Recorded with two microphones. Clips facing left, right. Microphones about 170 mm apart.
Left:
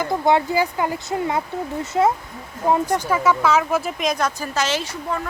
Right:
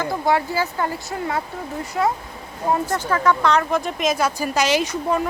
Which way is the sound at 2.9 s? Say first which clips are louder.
Left 1 dB; 10° left (ahead or behind).